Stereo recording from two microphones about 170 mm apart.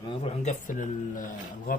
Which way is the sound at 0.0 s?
30° left (ahead or behind).